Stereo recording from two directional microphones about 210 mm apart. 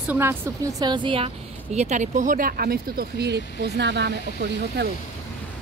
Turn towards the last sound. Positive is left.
turn(degrees=-55)  # may be behind; listen again after turning